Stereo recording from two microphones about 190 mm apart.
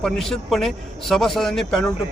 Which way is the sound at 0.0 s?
Centre (ahead or behind).